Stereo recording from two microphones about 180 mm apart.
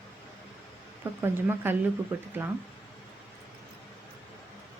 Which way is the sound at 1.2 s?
10° right (ahead or behind).